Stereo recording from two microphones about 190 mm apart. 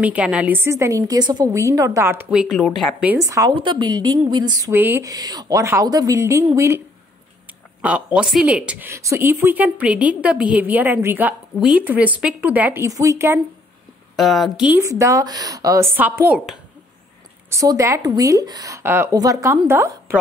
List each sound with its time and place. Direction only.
0.0 s speech: 5° right (ahead or behind); by 4.7 s 25° right (ahead or behind)
4.7 s speech: 10° right (ahead or behind)
7.8 s speech: 5° right (ahead or behind)
14.1 s speech: centre (ahead or behind)
17.5 s speech: 15° right (ahead or behind)